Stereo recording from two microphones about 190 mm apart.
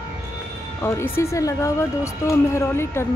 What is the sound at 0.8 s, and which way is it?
Speech, 15° left (ahead or behind).